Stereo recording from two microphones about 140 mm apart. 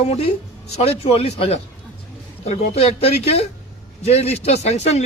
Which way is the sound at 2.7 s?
50° left (ahead or behind).